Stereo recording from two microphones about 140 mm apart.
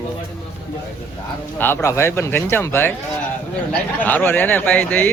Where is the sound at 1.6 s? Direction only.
15° left (ahead or behind).